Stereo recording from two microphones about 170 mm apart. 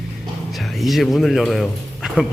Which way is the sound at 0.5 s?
Centre (ahead or behind).